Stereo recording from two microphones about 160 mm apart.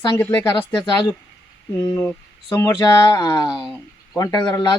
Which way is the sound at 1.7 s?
15° left (ahead or behind).